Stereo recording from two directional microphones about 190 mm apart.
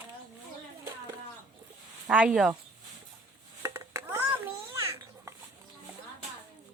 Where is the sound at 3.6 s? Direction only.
15° right (ahead or behind).